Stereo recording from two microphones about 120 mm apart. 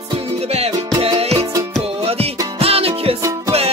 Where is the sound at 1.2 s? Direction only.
60° right (ahead or behind).